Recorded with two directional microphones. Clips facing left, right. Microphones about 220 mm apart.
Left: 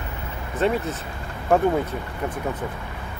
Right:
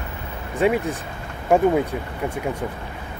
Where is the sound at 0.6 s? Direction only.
10° right (ahead or behind).